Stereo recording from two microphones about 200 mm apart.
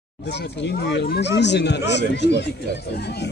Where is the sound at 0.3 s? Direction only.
60° left (ahead or behind).